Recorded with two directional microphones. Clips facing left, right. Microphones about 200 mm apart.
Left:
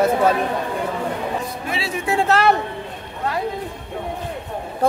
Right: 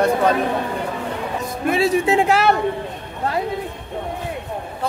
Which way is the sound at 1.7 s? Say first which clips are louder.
Right 13 dB; 45° right (ahead or behind).